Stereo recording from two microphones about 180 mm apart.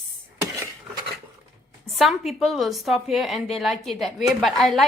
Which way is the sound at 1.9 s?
Centre (ahead or behind).